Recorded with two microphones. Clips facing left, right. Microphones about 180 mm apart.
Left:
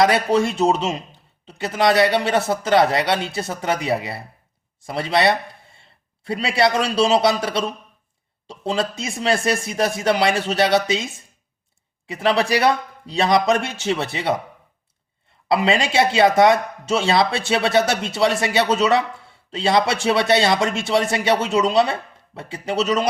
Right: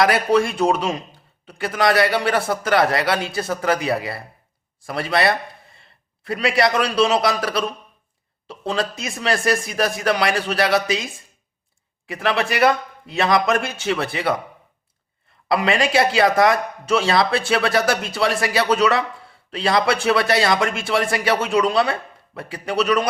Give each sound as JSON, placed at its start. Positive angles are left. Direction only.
{"t": 0.0, "sound": "a man's voice", "side_deg": 25}
{"t": 15.4, "sound": "speech", "side_deg": 25}